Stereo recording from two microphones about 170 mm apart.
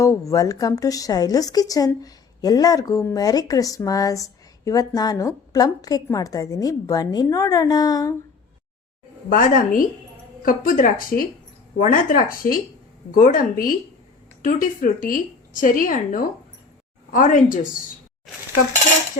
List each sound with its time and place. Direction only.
0.0 s a woman's voice: 20° left (ahead or behind)
9.3 s a woman's voice: 50° left (ahead or behind)